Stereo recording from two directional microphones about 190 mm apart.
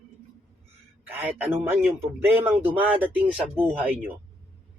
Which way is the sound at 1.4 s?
10° right (ahead or behind).